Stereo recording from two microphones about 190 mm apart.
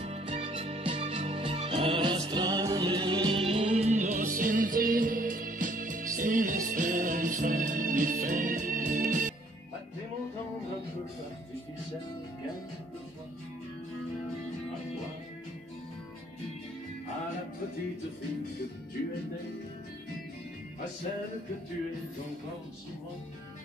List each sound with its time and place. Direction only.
0.0 s music: 35° right (ahead or behind)